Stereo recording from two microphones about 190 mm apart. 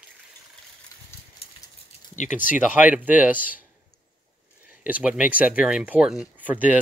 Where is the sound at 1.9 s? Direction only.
40° left (ahead or behind).